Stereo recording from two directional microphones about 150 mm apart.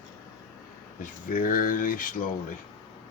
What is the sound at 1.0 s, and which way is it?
Speech, 60° left (ahead or behind).